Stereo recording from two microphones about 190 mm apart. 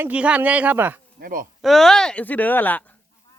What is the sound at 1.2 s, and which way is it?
Speech, 50° right (ahead or behind).